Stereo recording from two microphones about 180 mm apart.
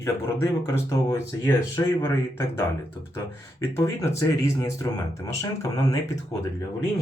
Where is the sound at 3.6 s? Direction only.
15° left (ahead or behind).